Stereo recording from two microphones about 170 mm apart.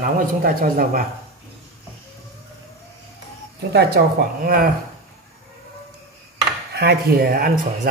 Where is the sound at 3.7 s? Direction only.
70° right (ahead or behind).